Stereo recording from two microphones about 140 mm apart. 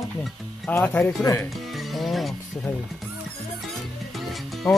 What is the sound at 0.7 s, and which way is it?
Speech, 10° left (ahead or behind).